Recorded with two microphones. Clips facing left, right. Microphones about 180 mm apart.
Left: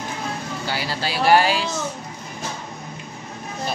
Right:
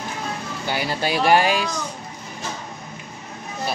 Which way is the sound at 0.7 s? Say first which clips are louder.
Right 4 dB; 20° right (ahead or behind).